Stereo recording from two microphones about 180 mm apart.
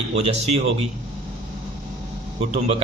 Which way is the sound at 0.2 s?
35° right (ahead or behind).